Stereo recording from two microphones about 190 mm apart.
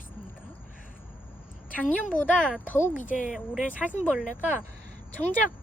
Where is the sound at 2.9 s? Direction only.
40° left (ahead or behind).